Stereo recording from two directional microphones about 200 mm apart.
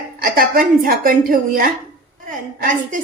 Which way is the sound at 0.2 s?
45° right (ahead or behind).